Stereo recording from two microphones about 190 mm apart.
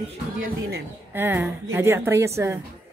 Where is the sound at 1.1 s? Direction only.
10° right (ahead or behind).